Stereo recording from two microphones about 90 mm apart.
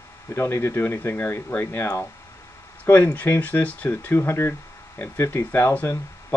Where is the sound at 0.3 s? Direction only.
25° left (ahead or behind).